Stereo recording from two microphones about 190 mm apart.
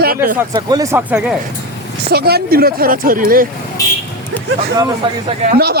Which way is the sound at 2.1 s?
55° right (ahead or behind).